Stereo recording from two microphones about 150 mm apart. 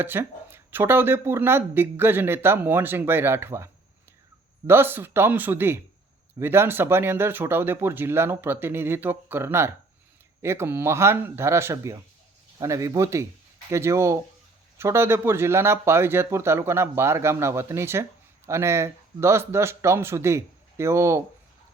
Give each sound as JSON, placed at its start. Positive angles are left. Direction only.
{"t": 0.0, "sound": "speech", "side_deg": -15}